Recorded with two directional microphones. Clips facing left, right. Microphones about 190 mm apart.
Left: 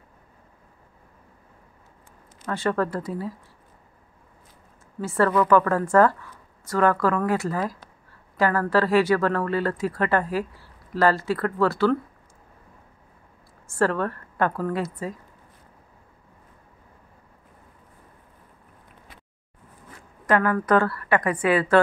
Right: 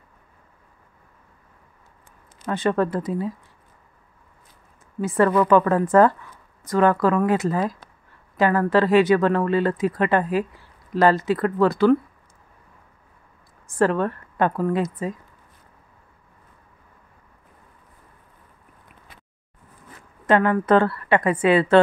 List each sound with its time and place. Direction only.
2.4 s speech: 20° right (ahead or behind)
5.0 s speech: 15° right (ahead or behind)
13.7 s speech: 20° right (ahead or behind)
20.2 s speech: 25° right (ahead or behind)